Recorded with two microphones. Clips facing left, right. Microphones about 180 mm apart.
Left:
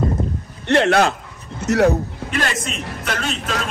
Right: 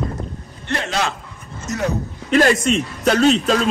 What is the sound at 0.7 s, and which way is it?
A man's voice, 65° left (ahead or behind).